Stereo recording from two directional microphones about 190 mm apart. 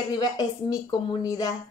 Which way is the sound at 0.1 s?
20° left (ahead or behind).